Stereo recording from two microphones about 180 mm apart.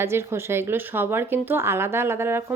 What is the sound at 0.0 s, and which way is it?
Speech, 15° right (ahead or behind).